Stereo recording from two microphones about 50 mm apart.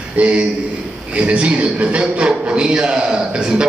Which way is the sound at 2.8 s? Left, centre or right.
Centre.